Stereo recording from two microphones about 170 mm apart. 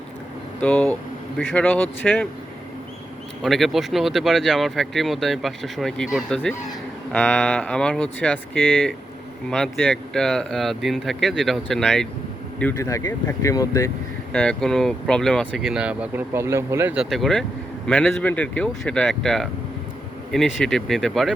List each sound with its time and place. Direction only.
0.6 s speech: 10° left (ahead or behind)
3.4 s speech: centre (ahead or behind)
9.5 s speech: 5° left (ahead or behind)
12.8 s speech: 20° left (ahead or behind)
14.3 s speech: 5° left (ahead or behind)